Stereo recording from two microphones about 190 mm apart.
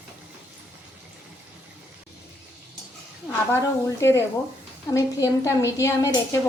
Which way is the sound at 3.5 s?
15° left (ahead or behind).